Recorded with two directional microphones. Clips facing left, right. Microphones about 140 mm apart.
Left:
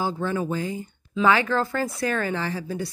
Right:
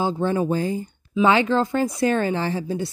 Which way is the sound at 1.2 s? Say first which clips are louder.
Right 3 dB; 25° right (ahead or behind).